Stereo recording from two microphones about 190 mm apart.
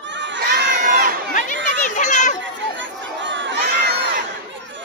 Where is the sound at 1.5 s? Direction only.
75° right (ahead or behind).